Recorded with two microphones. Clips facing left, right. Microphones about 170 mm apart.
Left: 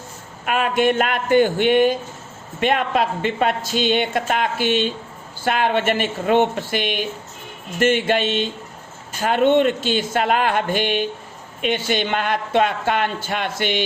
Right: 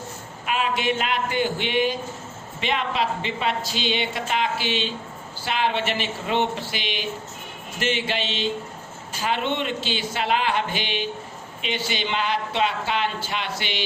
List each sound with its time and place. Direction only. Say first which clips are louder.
0.4 s speech: left 6 dB; 50° left (ahead or behind)